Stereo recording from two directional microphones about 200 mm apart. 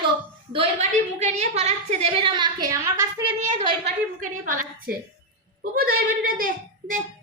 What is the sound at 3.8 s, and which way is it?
A child's voice, 45° right (ahead or behind).